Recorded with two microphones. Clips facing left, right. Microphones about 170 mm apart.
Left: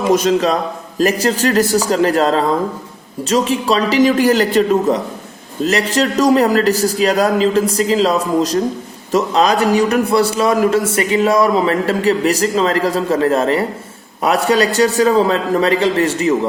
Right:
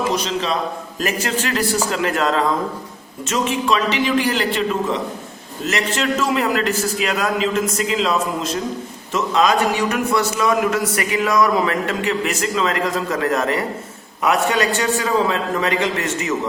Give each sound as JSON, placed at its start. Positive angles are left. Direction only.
{"t": 0.1, "sound": "a man's voice", "side_deg": 50}
{"t": 0.9, "sound": "a man's voice", "side_deg": 35}